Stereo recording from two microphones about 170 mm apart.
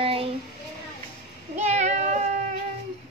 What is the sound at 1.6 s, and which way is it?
Child singing, 40° right (ahead or behind).